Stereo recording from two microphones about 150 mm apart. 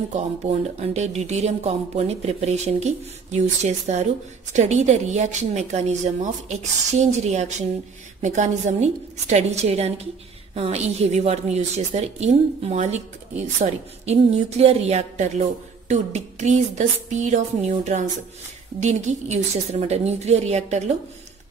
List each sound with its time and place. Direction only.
0.1 s speech: 50° right (ahead or behind)